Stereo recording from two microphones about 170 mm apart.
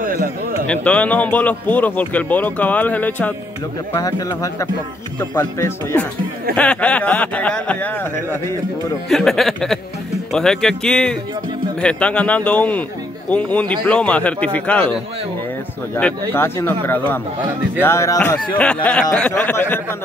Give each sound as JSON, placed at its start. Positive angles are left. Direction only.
{"t": 0.0, "sound": "a sound", "side_deg": -55}
{"t": 0.7, "sound": "speech", "side_deg": 10}
{"t": 3.9, "sound": "speech", "side_deg": 20}
{"t": 5.4, "sound": "speech", "side_deg": 10}
{"t": 16.0, "sound": "speech", "side_deg": 15}
{"t": 18.6, "sound": "speech", "side_deg": 5}